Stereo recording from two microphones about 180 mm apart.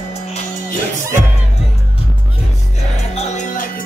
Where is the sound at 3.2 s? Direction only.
45° left (ahead or behind).